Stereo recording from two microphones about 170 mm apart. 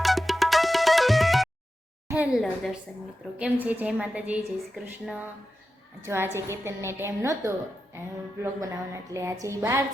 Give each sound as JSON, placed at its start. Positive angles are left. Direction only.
{"t": 0.0, "sound": "music", "side_deg": 0}
{"t": 2.0, "sound": "a woman's voice", "side_deg": -10}